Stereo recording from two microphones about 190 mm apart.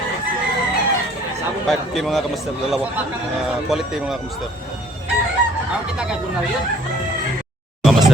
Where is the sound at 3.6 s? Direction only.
Centre (ahead or behind).